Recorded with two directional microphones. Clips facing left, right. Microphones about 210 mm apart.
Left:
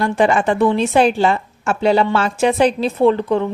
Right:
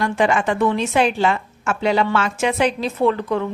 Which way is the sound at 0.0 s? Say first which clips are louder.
Left 3 dB; 35° left (ahead or behind).